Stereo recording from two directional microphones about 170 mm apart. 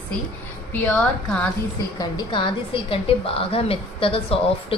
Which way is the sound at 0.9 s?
5° left (ahead or behind).